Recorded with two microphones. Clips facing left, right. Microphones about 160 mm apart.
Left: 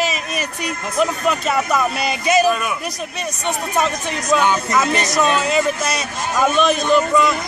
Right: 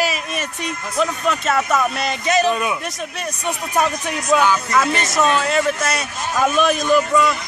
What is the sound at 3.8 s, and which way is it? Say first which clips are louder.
Speech: right 2 dB; 5° right (ahead or behind).